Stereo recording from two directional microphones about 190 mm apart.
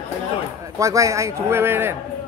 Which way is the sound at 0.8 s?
15° right (ahead or behind).